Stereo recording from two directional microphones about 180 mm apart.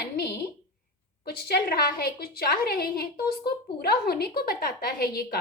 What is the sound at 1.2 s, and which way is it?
A woman's voice, 60° left (ahead or behind).